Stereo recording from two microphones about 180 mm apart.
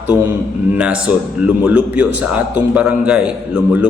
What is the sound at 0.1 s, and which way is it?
Speech, 25° left (ahead or behind).